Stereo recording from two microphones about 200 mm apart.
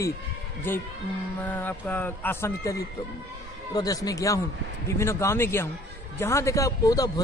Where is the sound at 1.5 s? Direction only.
10° left (ahead or behind).